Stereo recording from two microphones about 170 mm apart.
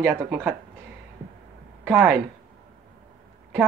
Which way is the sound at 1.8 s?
10° right (ahead or behind).